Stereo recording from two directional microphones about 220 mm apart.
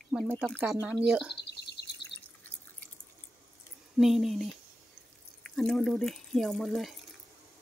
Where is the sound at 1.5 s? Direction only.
50° left (ahead or behind).